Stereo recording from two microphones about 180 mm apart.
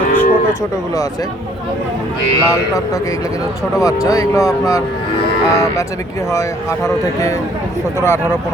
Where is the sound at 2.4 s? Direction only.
15° left (ahead or behind).